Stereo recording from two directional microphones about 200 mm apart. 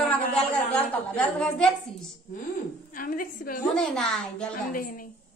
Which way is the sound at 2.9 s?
45° left (ahead or behind).